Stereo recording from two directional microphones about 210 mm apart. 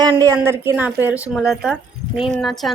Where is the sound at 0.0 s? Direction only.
15° right (ahead or behind).